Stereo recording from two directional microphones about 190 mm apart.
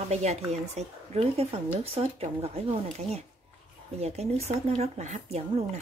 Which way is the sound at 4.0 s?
35° right (ahead or behind).